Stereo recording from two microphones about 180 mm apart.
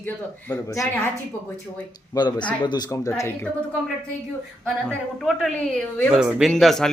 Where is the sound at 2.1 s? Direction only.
25° left (ahead or behind).